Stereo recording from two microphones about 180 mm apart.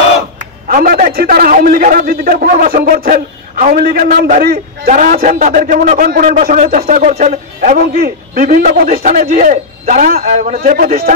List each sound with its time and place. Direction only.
0.7 s a man's voice: 50° right (ahead or behind)